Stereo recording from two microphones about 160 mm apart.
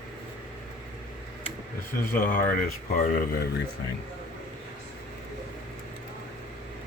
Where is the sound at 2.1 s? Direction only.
60° left (ahead or behind).